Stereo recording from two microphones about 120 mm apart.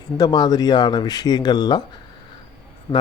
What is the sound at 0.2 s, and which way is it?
Speech, 35° left (ahead or behind).